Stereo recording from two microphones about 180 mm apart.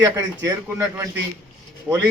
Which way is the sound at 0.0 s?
15° right (ahead or behind).